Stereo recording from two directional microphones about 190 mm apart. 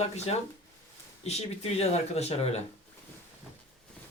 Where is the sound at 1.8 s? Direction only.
35° left (ahead or behind).